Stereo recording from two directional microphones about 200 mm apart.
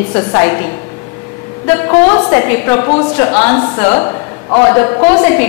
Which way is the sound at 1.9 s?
15° left (ahead or behind).